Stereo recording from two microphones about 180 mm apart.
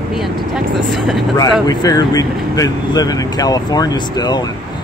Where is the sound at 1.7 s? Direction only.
20° left (ahead or behind).